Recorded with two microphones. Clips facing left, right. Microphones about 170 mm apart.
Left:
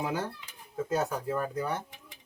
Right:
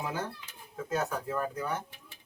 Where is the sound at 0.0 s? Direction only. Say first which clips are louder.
Left 3 dB; 10° left (ahead or behind).